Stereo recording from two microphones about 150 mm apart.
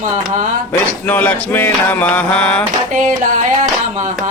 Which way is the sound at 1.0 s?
10° left (ahead or behind).